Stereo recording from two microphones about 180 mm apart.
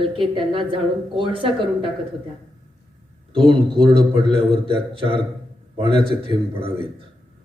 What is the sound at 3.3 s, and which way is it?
A man's voice, 30° right (ahead or behind).